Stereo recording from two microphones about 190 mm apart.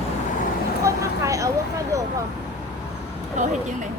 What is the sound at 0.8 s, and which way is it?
A child's voice, 15° right (ahead or behind).